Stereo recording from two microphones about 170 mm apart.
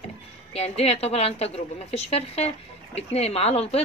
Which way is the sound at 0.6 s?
35° left (ahead or behind).